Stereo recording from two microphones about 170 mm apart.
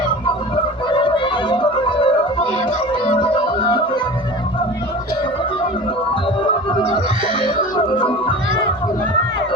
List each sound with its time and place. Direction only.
0.9 s music: 30° left (ahead or behind)
6.4 s music: 30° left (ahead or behind)
7.9 s music: 30° left (ahead or behind)